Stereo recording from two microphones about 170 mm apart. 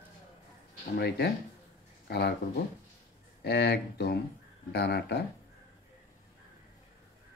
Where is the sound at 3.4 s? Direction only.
75° left (ahead or behind).